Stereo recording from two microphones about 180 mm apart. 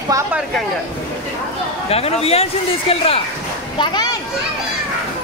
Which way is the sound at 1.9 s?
35° left (ahead or behind).